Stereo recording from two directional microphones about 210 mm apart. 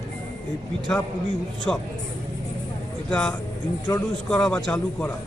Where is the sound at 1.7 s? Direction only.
5° left (ahead or behind).